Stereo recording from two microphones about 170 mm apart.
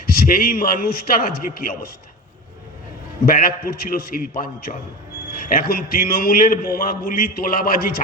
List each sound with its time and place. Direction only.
0.0 s a man's voice: 60° left (ahead or behind)
3.2 s a man's voice: 60° left (ahead or behind)